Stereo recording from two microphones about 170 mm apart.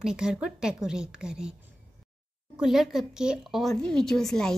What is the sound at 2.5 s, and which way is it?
A woman's voice, centre (ahead or behind).